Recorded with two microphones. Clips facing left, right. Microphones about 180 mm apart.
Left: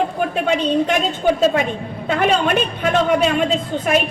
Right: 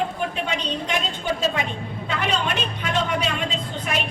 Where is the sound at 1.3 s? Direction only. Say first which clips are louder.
Left 7 dB; 50° left (ahead or behind).